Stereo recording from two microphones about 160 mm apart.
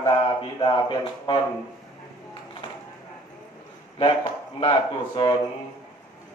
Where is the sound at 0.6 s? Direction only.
30° left (ahead or behind).